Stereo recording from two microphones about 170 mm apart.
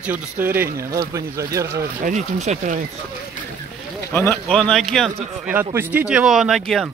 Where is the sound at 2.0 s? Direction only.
45° right (ahead or behind).